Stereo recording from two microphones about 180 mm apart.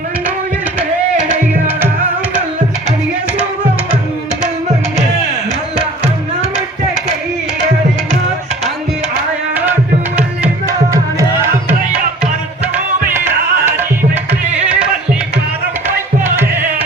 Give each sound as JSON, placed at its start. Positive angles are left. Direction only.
{"t": 1.2, "sound": "music", "side_deg": -10}
{"t": 10.7, "sound": "music", "side_deg": -20}
{"t": 12.7, "sound": "music", "side_deg": -10}
{"t": 16.2, "sound": "music", "side_deg": -10}